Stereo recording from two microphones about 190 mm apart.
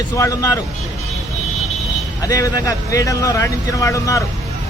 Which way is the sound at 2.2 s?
20° left (ahead or behind).